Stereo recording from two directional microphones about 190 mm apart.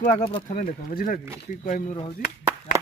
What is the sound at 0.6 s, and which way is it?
Speech, 45° left (ahead or behind).